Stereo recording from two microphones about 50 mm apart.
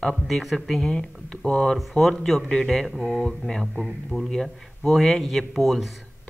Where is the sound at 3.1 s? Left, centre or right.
Centre.